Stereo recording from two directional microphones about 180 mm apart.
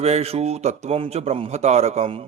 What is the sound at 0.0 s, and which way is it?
A man's voice, 35° right (ahead or behind).